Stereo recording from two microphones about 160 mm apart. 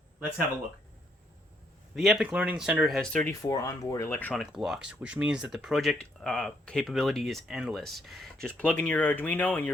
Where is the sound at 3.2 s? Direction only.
20° left (ahead or behind).